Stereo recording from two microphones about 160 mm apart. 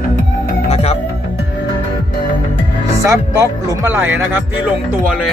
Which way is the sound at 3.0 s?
20° right (ahead or behind).